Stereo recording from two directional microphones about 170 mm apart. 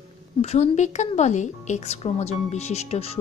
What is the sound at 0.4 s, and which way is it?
A woman's voice, 40° left (ahead or behind).